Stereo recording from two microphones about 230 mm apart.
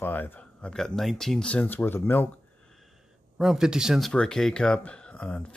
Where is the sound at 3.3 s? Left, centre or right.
Centre.